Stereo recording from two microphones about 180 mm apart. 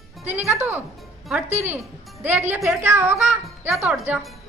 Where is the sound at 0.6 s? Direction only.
10° right (ahead or behind).